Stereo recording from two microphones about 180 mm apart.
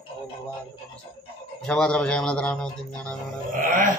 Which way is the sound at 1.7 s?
5° left (ahead or behind).